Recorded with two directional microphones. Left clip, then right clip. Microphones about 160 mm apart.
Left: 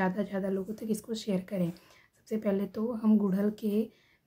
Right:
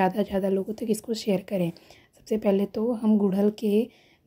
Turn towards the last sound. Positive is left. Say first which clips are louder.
# right 8 dB
turn(degrees=-35)  # may be behind; listen again after turning